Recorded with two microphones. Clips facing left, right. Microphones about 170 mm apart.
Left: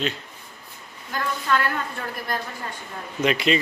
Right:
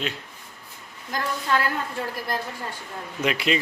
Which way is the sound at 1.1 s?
35° right (ahead or behind).